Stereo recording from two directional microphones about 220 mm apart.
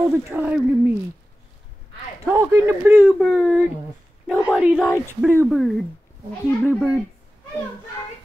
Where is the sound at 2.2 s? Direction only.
10° right (ahead or behind).